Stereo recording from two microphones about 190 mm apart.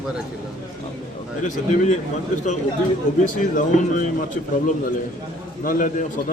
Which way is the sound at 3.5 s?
45° left (ahead or behind).